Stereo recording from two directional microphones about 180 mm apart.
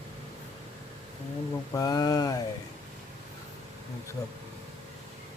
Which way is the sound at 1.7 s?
20° left (ahead or behind).